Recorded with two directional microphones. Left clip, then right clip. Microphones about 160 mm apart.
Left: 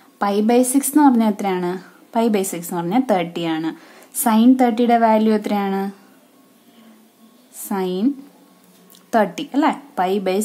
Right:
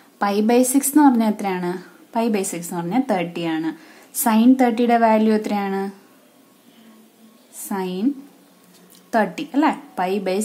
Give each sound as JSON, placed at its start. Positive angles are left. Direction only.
{"t": 0.2, "sound": "a woman's voice", "side_deg": 15}
{"t": 7.6, "sound": "a woman's voice", "side_deg": 15}
{"t": 9.1, "sound": "a woman's voice", "side_deg": 20}